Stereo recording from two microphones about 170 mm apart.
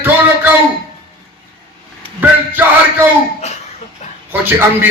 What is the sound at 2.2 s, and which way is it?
Speech, 10° right (ahead or behind).